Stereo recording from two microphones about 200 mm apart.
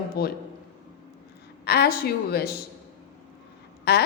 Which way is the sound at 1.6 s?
50° left (ahead or behind).